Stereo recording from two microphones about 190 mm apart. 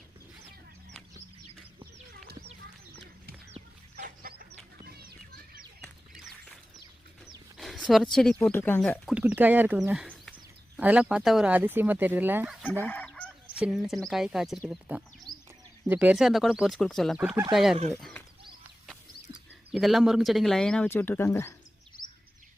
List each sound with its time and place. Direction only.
3.9 s chicken: 55° right (ahead or behind)
4.9 s a sound: 55° right (ahead or behind)
5.8 s bird: centre (ahead or behind)
7.3 s speech: centre (ahead or behind)
9.0 s speech: 5° right (ahead or behind)
12.8 s chicken: 10° left (ahead or behind)
13.5 s speech: 5° right (ahead or behind)
19.7 s speech: centre (ahead or behind)